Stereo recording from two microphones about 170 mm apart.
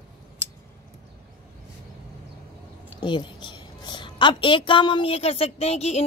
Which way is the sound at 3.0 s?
25° left (ahead or behind).